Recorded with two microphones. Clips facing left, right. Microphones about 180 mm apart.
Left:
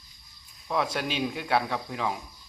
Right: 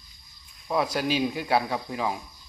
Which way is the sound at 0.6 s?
5° right (ahead or behind).